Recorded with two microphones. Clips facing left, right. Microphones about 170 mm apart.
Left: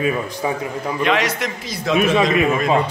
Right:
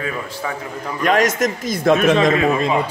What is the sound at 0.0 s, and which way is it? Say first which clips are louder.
Speech: left 5 dB; 20° left (ahead or behind).